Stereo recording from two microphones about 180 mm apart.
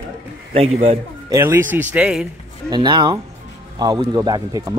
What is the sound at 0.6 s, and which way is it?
Speech, 35° right (ahead or behind).